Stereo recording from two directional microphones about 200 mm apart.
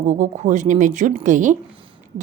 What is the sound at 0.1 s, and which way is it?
A woman's voice, 40° right (ahead or behind).